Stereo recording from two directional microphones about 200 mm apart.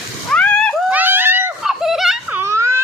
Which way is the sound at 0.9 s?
10° right (ahead or behind).